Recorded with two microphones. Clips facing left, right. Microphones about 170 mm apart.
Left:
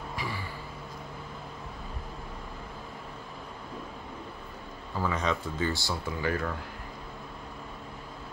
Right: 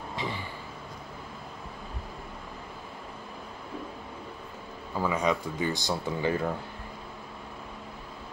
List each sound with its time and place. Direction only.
0.1 s vehicle: 25° right (ahead or behind)
5.0 s speech: 10° right (ahead or behind)